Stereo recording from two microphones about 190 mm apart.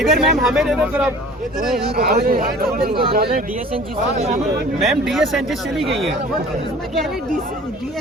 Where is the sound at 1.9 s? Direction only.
55° right (ahead or behind).